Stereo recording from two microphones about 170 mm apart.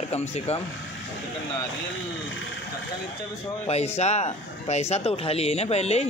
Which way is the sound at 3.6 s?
40° left (ahead or behind).